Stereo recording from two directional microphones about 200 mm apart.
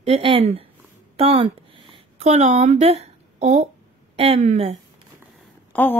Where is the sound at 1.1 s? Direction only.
30° right (ahead or behind).